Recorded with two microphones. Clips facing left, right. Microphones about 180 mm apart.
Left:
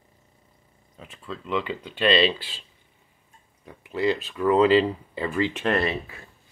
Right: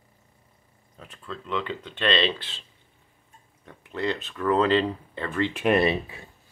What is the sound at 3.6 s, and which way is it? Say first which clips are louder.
Speech: left 4 dB; 5° left (ahead or behind).